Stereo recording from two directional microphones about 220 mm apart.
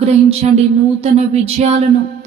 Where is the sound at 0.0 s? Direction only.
30° right (ahead or behind).